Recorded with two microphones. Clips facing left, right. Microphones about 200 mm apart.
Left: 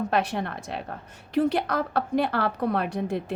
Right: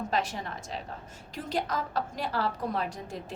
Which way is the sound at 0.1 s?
60° left (ahead or behind).